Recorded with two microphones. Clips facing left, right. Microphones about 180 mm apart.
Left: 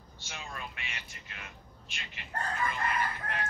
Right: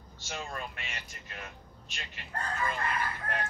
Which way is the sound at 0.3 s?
50° right (ahead or behind).